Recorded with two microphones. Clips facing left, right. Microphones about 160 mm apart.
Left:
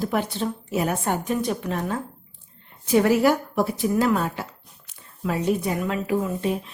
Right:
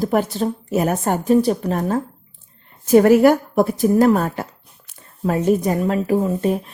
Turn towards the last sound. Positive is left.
turn(degrees=-45)  # may be behind; listen again after turning